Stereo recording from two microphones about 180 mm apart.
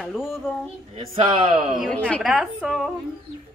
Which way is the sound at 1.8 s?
5° left (ahead or behind).